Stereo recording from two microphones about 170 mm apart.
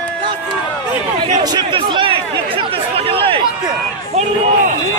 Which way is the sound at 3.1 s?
30° right (ahead or behind).